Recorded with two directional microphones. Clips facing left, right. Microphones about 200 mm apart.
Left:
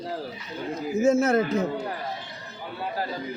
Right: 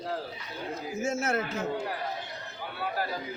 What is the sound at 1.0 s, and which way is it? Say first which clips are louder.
Speech: left 10 dB; 35° left (ahead or behind).